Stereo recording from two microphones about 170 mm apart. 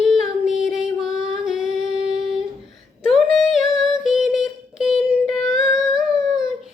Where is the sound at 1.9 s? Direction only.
30° right (ahead or behind).